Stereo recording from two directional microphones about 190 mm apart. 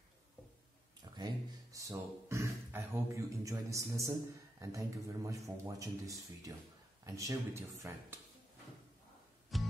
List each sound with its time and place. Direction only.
1.0 s a man's voice: 20° right (ahead or behind)
9.5 s music: centre (ahead or behind)